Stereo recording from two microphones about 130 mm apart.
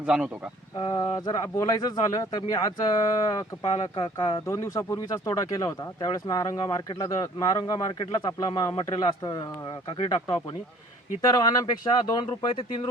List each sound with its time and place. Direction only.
0.0 s speech: 10° right (ahead or behind)
0.8 s speech: 35° left (ahead or behind)
3.6 s speech: 55° left (ahead or behind)
3.9 s speech: 35° left (ahead or behind)
11.2 s speech: 30° left (ahead or behind)